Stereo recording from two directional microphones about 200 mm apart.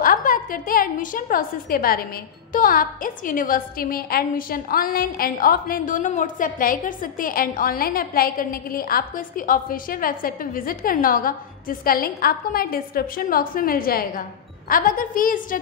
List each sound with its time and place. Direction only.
0.0 s a woman's voice: 45° left (ahead or behind)